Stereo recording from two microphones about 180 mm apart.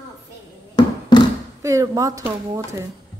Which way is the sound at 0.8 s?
25° left (ahead or behind).